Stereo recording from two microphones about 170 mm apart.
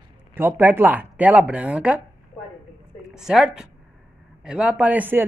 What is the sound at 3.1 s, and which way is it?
Speech, 5° right (ahead or behind).